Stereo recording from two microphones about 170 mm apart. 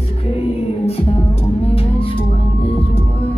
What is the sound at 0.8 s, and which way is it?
Music, 35° left (ahead or behind).